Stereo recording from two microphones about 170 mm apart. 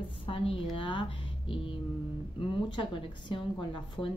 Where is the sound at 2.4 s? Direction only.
30° left (ahead or behind).